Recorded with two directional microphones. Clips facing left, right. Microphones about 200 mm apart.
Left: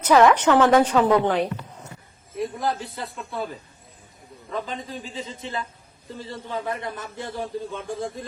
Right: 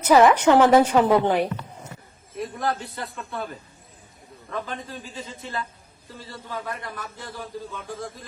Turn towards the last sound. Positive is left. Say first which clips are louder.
# left 4 dB
turn(degrees=25)  # may be behind; listen again after turning